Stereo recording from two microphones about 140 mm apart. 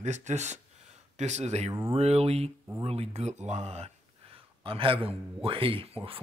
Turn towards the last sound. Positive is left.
turn(degrees=-40)  # may be behind; listen again after turning